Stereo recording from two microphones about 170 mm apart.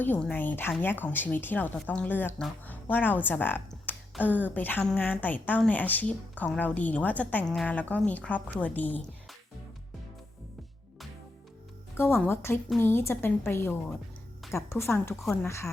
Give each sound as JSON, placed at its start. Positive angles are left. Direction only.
{"t": 0.0, "sound": "speech", "side_deg": 10}
{"t": 11.9, "sound": "speech", "side_deg": 15}